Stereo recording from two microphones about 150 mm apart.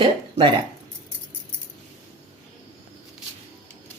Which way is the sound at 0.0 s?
35° right (ahead or behind).